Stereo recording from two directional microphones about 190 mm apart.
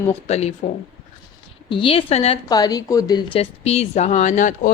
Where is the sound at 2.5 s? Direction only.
20° left (ahead or behind).